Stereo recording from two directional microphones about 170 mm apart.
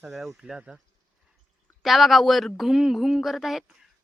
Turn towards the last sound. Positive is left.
turn(degrees=0)  # may be behind; listen again after turning